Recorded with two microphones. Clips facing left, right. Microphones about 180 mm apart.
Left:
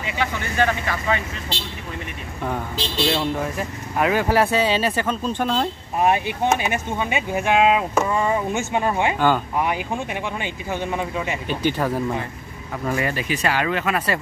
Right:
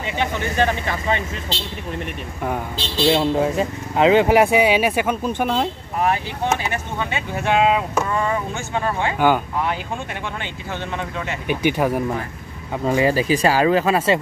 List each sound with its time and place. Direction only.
0.2 s speech: 20° right (ahead or behind)
3.1 s speech: 25° right (ahead or behind)
5.9 s speech: 20° left (ahead or behind)
8.2 s speech: 15° left (ahead or behind)
10.4 s speech: 10° left (ahead or behind)
11.4 s speech: 15° right (ahead or behind)
12.8 s speech: 25° right (ahead or behind)